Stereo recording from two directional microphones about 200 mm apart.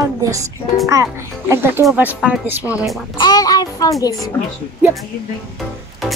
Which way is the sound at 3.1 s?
20° left (ahead or behind).